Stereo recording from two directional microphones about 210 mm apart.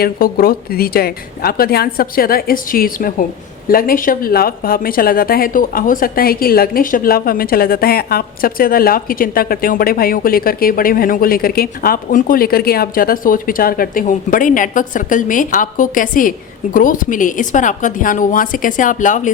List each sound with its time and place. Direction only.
0.0 s a woman's voice: 45° left (ahead or behind)